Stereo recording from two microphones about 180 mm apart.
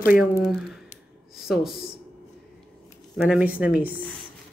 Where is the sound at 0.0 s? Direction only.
50° left (ahead or behind).